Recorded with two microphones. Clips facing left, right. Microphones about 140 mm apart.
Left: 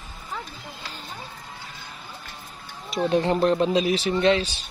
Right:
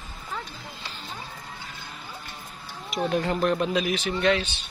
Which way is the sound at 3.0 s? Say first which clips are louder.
Left 4 dB; 30° left (ahead or behind).